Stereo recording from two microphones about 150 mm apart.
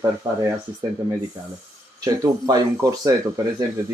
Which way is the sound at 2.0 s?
25° right (ahead or behind).